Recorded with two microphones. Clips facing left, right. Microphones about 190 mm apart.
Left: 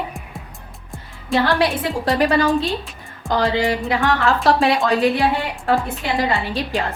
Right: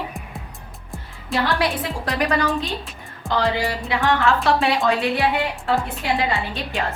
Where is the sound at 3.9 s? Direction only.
35° left (ahead or behind).